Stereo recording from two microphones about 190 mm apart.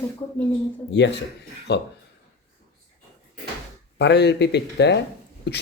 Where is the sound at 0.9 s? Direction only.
65° left (ahead or behind).